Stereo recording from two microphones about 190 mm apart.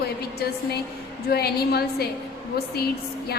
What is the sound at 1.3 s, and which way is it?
A woman's voice, 55° left (ahead or behind).